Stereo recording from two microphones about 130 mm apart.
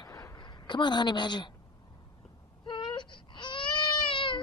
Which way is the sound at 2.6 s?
40° left (ahead or behind).